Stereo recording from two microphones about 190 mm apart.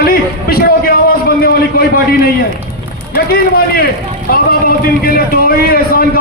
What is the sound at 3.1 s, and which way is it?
Speech, 55° left (ahead or behind).